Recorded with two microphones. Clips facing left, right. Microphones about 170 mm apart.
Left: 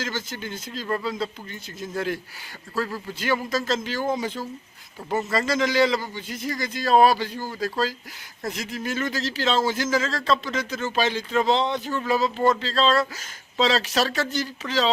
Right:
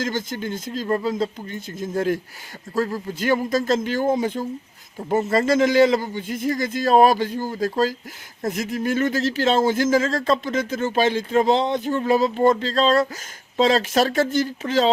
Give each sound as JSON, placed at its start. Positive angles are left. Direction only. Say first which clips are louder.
{"t": 0.0, "sound": "speech", "louder": "right 5 dB", "side_deg": -50}